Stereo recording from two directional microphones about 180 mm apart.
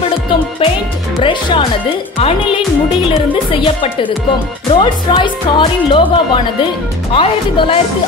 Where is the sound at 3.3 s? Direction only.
30° left (ahead or behind).